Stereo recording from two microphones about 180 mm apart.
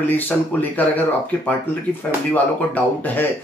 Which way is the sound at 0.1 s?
10° left (ahead or behind).